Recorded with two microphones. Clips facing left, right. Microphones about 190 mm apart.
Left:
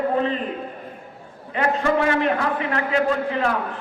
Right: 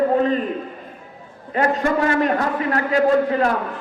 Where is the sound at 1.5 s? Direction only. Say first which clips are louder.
Right 1 dB; 40° right (ahead or behind).